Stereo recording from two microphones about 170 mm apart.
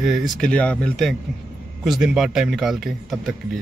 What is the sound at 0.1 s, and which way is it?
Speech, centre (ahead or behind).